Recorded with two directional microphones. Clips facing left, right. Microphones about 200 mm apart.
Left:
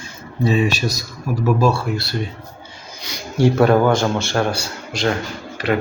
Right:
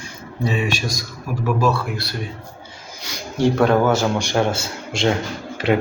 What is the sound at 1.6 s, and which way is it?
Speech, 30° left (ahead or behind).